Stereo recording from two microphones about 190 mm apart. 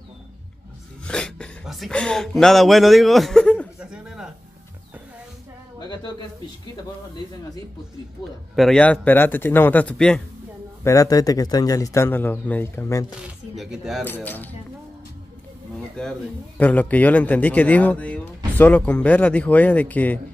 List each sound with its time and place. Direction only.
1.0 s speech: 5° left (ahead or behind)
5.8 s speech: 20° left (ahead or behind)
8.5 s a man's voice: 5° left (ahead or behind)
10.8 s a man's voice: 15° left (ahead or behind)
13.6 s speech: centre (ahead or behind)
14.0 s a man's voice: 10° left (ahead or behind)
16.0 s a man's voice: 5° left (ahead or behind)